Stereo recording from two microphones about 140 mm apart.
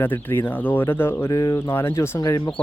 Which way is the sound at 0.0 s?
15° left (ahead or behind).